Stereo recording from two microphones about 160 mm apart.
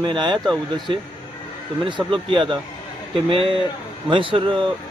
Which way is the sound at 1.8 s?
35° right (ahead or behind).